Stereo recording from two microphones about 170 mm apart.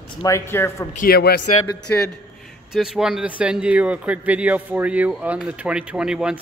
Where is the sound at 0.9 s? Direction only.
60° left (ahead or behind).